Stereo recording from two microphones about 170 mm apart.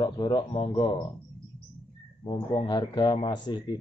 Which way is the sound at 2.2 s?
30° left (ahead or behind).